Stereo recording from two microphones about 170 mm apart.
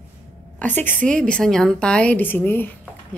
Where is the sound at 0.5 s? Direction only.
10° left (ahead or behind).